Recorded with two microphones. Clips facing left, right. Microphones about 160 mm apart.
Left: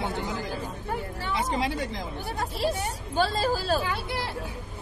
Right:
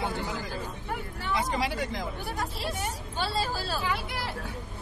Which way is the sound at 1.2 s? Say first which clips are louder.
Even; 25° left (ahead or behind).